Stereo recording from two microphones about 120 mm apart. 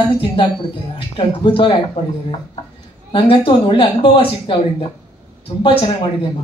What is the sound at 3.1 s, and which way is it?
Speech, 45° left (ahead or behind).